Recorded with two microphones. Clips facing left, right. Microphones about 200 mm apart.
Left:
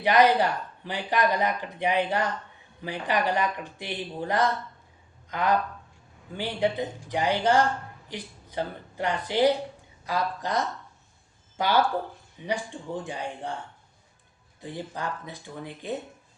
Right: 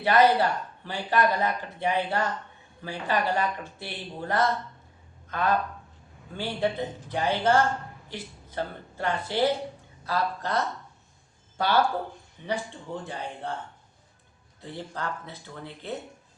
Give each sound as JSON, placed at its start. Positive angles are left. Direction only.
{"t": 0.0, "sound": "speech", "side_deg": 15}
{"t": 14.6, "sound": "speech", "side_deg": 15}